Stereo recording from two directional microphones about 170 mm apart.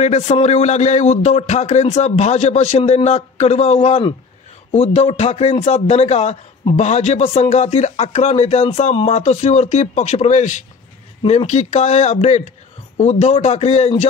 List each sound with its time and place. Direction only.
0.0 s a man's voice: 40° left (ahead or behind)